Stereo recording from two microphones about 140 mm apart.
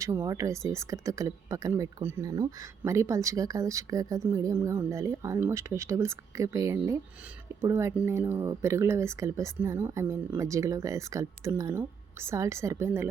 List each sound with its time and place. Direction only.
0.0 s speech: 20° right (ahead or behind)